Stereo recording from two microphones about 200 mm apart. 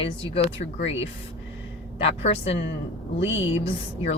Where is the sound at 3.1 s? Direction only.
65° left (ahead or behind).